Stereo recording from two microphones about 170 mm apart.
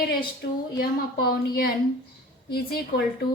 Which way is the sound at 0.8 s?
65° left (ahead or behind).